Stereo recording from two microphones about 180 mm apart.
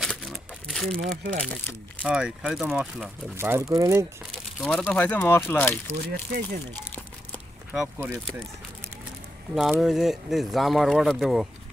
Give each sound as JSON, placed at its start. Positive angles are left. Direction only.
{"t": 0.0, "sound": "crumpling", "side_deg": 0}
{"t": 0.9, "sound": "speech", "side_deg": -50}
{"t": 2.0, "sound": "speech", "side_deg": -5}
{"t": 4.3, "sound": "speech", "side_deg": 5}
{"t": 5.9, "sound": "speech", "side_deg": -50}
{"t": 7.7, "sound": "speech", "side_deg": -5}
{"t": 9.6, "sound": "speech", "side_deg": 0}